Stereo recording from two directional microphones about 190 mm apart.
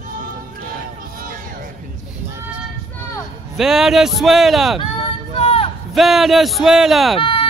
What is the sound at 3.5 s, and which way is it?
Speech, centre (ahead or behind).